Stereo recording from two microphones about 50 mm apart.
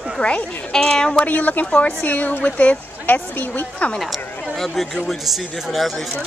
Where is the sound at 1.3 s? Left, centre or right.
Left.